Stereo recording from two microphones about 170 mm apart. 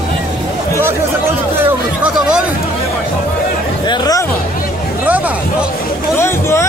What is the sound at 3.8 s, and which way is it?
Speech, 25° left (ahead or behind).